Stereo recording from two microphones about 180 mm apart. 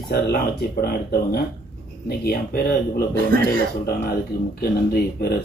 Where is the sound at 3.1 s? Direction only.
55° right (ahead or behind).